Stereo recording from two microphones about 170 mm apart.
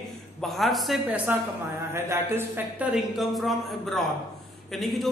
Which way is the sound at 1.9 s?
15° right (ahead or behind).